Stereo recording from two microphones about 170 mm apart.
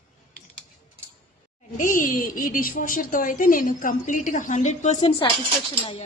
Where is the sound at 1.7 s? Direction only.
50° left (ahead or behind).